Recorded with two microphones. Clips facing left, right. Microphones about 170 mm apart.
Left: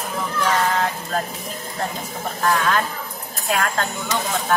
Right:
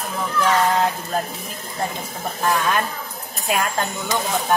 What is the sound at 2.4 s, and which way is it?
Speech, 15° right (ahead or behind).